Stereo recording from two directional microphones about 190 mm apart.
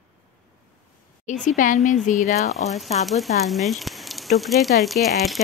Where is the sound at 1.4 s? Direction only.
45° left (ahead or behind).